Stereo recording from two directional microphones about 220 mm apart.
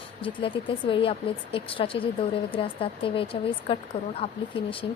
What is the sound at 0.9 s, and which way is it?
Speech, 25° left (ahead or behind).